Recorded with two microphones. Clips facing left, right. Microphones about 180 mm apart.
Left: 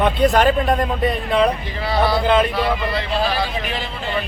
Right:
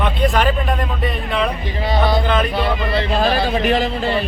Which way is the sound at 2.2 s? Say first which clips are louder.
Left 2 dB; 30° left (ahead or behind).